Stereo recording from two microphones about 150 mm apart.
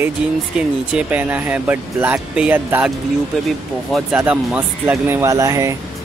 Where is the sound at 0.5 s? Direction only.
10° right (ahead or behind).